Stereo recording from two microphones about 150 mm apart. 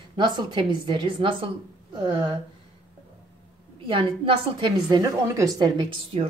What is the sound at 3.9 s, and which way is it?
A woman's voice, 35° right (ahead or behind).